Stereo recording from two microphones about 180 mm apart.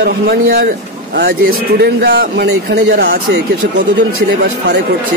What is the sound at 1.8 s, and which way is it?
A man's voice, 60° right (ahead or behind).